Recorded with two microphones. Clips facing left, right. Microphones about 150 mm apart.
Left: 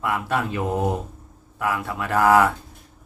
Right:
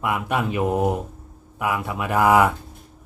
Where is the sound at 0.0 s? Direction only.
15° right (ahead or behind).